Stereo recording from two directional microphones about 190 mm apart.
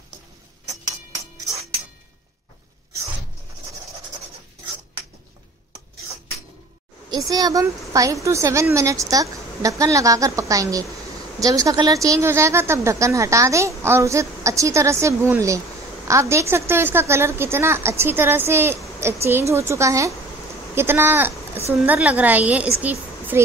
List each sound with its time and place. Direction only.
7.1 s a woman's voice: 20° right (ahead or behind)